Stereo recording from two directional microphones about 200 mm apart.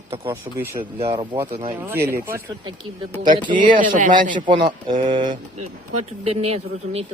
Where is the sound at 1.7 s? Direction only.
10° right (ahead or behind).